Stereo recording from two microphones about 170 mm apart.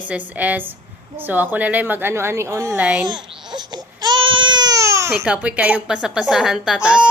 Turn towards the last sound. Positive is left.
turn(degrees=-5)  # may be behind; listen again after turning